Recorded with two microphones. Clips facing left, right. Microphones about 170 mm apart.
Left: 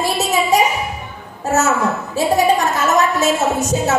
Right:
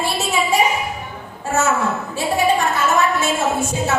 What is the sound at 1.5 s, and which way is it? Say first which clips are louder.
Speech: left 3 dB; 40° left (ahead or behind).